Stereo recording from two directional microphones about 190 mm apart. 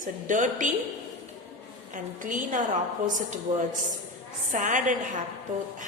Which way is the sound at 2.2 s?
45° right (ahead or behind).